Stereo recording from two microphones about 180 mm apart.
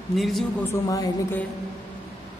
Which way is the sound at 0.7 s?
15° left (ahead or behind).